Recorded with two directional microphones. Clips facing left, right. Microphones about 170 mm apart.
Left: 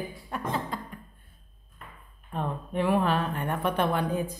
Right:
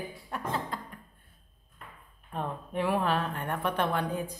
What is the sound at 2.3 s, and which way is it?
A woman's voice, centre (ahead or behind).